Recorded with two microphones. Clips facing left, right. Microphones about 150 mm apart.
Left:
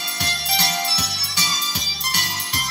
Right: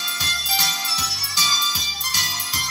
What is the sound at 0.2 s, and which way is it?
Music, 70° left (ahead or behind).